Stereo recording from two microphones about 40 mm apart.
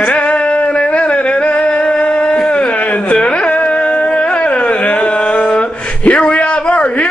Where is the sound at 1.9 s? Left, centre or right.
Left.